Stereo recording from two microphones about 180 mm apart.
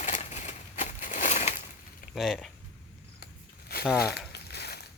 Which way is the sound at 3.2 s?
55° left (ahead or behind).